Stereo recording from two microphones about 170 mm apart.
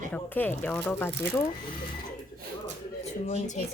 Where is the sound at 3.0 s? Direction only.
40° left (ahead or behind).